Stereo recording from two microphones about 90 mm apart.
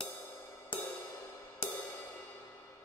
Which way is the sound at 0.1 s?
25° left (ahead or behind).